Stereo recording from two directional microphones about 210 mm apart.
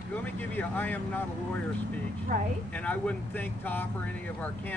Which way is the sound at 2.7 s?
5° left (ahead or behind).